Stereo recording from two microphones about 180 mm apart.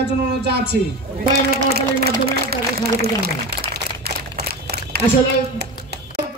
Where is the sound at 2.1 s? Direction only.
60° right (ahead or behind).